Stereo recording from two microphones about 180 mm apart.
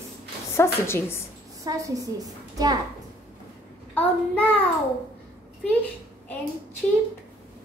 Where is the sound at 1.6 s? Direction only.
20° right (ahead or behind).